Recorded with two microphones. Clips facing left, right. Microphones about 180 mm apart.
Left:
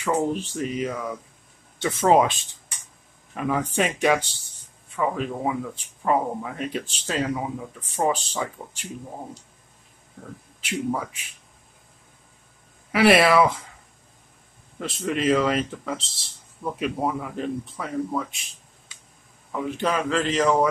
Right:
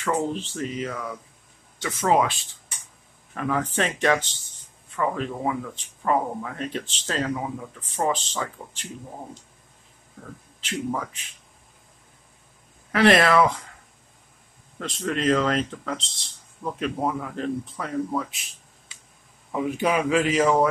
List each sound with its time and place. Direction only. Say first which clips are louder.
0.0 s speech: left 2 dB; 10° left (ahead or behind)
1.8 s speech: left 3 dB; 30° left (ahead or behind)
3.3 s speech: left 1 dB; 10° left (ahead or behind)
10.6 s speech: left 2 dB; 10° left (ahead or behind)
12.9 s speech: left 1 dB; 10° left (ahead or behind)
14.8 s speech: left 1 dB; 5° left (ahead or behind)
19.5 s speech: right 2 dB; 15° right (ahead or behind)